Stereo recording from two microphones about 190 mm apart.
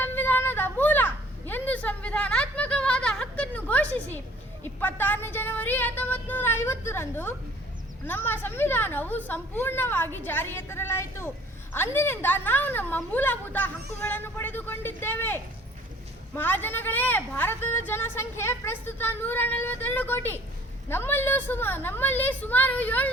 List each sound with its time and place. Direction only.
0.0 s children playing: 10° left (ahead or behind)
4.6 s a sound: 10° left (ahead or behind)
8.0 s a woman's voice: 10° left (ahead or behind)